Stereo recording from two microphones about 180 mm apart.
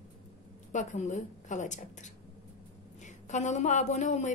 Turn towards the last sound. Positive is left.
turn(degrees=40)  # may be behind; listen again after turning